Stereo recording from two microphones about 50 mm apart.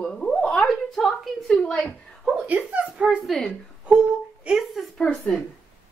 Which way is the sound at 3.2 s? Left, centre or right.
Centre.